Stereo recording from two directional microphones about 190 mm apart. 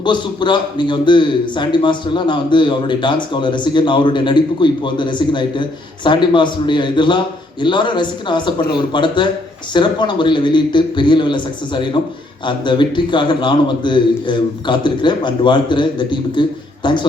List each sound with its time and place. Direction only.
0.0 s a man's voice: 25° left (ahead or behind)